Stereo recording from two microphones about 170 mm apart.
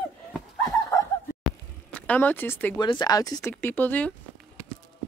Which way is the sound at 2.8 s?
25° left (ahead or behind).